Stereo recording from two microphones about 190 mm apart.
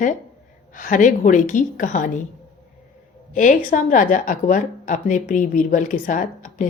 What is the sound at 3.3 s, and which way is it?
A woman's voice, 45° left (ahead or behind).